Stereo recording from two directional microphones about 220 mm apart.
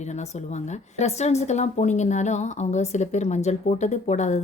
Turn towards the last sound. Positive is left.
turn(degrees=35)  # may be behind; listen again after turning